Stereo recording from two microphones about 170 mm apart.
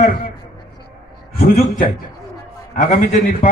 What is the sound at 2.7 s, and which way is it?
Speech, 50° left (ahead or behind).